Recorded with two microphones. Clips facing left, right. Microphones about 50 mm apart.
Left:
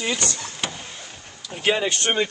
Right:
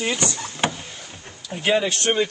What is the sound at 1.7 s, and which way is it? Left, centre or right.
Speech, centre.